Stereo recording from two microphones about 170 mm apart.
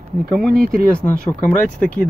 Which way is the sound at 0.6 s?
60° right (ahead or behind).